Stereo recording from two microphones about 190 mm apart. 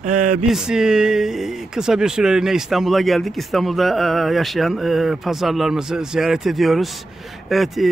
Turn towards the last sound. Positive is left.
turn(degrees=0)  # may be behind; listen again after turning